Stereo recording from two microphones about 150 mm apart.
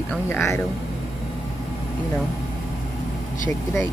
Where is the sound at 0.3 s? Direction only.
15° left (ahead or behind).